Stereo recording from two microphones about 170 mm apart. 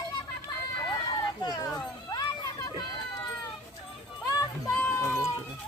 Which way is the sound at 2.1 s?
20° left (ahead or behind).